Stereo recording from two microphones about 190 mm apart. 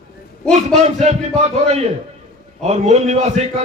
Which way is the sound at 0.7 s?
40° right (ahead or behind).